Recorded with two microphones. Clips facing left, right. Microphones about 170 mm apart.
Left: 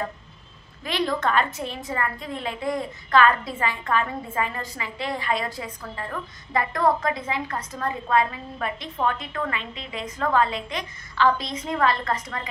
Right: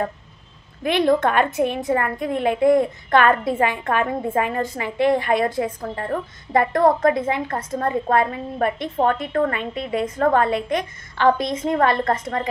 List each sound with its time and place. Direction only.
0.8 s a woman's voice: 55° right (ahead or behind)